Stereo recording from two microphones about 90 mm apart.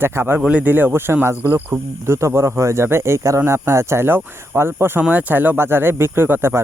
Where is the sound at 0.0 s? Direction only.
30° right (ahead or behind).